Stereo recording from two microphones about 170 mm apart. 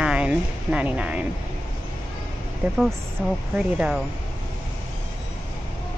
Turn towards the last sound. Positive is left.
turn(degrees=-5)  # may be behind; listen again after turning